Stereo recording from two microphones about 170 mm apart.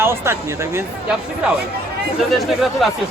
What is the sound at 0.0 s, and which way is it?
Speech, 15° right (ahead or behind).